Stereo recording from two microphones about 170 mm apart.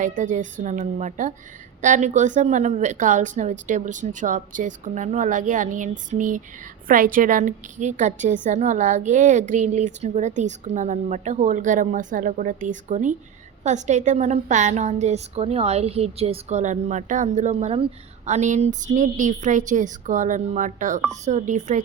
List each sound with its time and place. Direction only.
0.0 s speech: 50° right (ahead or behind)